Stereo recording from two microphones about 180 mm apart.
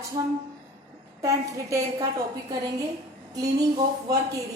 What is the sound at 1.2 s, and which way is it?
Speech, 15° right (ahead or behind).